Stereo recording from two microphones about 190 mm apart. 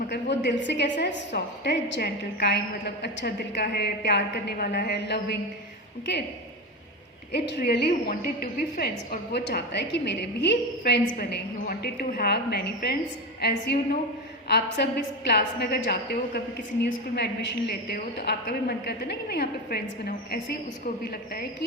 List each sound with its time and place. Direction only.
0.1 s a woman's voice: 70° left (ahead or behind)
7.3 s a woman's voice: 60° left (ahead or behind)